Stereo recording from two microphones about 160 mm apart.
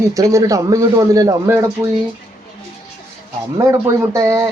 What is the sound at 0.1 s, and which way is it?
Speech, 20° right (ahead or behind).